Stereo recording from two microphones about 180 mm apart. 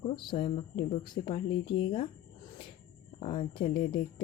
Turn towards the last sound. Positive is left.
turn(degrees=30)  # may be behind; listen again after turning